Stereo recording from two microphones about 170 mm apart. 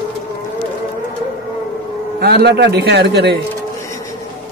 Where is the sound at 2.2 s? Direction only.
75° right (ahead or behind).